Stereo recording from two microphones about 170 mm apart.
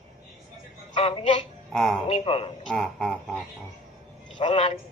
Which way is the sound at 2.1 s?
35° left (ahead or behind).